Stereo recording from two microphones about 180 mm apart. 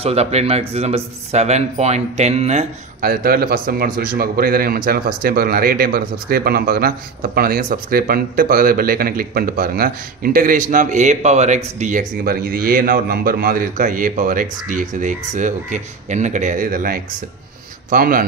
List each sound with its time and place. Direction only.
0.0 s speech: 35° right (ahead or behind)
3.0 s speech: 55° right (ahead or behind)